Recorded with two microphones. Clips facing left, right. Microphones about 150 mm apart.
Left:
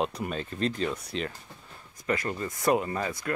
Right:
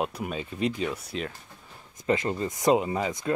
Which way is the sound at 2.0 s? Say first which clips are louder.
Right 4 dB; 25° right (ahead or behind).